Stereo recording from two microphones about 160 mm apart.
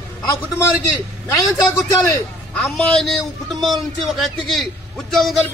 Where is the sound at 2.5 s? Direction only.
5° left (ahead or behind).